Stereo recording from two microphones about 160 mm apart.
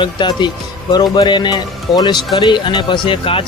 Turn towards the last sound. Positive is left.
turn(degrees=35)  # may be behind; listen again after turning